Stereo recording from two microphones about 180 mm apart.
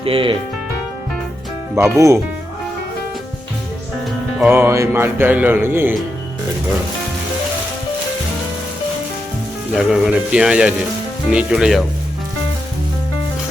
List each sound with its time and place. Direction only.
0.0 s speech: 30° right (ahead or behind)
1.7 s speech: 15° right (ahead or behind)
4.4 s speech: 10° right (ahead or behind)
9.7 s speech: 5° right (ahead or behind)